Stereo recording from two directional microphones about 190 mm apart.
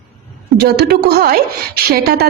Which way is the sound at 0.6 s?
55° right (ahead or behind).